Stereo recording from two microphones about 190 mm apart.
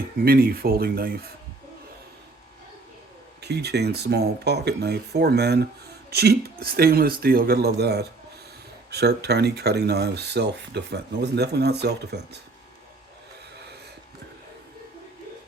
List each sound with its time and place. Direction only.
0.2 s speech: 50° right (ahead or behind)
3.4 s speech: 60° right (ahead or behind)